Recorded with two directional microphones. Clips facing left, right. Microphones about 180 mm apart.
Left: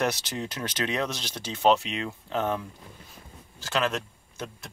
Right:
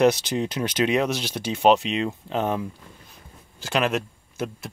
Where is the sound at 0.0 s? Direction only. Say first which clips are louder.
Right 9 dB; 20° right (ahead or behind).